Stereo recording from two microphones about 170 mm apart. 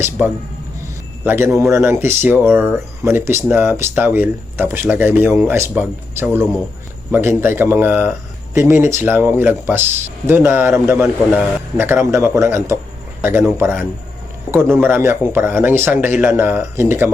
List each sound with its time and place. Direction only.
0.2 s speech: 10° right (ahead or behind)